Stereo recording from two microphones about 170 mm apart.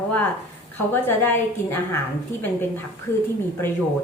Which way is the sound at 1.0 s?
10° left (ahead or behind).